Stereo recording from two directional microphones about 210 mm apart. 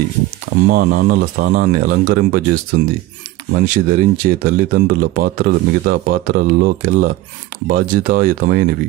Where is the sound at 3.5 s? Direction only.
40° right (ahead or behind).